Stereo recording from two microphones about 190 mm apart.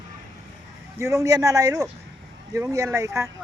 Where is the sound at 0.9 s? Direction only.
15° right (ahead or behind).